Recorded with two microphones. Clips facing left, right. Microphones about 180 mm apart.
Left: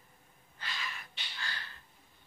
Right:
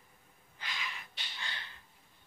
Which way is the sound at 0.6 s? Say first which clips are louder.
Left 1 dB; 15° right (ahead or behind).